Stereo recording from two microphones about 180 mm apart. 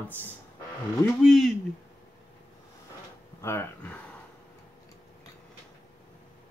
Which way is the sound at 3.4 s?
15° left (ahead or behind).